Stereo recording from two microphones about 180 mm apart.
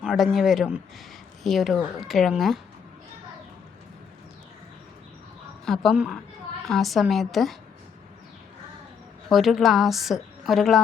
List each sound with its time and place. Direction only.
0.0 s a woman's voice: 5° right (ahead or behind)
5.6 s a woman's voice: centre (ahead or behind)
9.3 s a woman's voice: centre (ahead or behind)